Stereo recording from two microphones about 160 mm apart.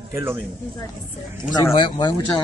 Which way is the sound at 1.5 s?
30° left (ahead or behind).